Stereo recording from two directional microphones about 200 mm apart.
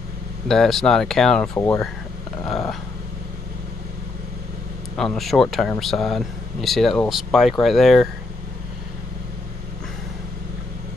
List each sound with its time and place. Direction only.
0.5 s speech: centre (ahead or behind)
4.9 s speech: centre (ahead or behind)